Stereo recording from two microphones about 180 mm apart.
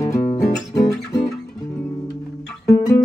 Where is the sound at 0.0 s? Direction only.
15° left (ahead or behind).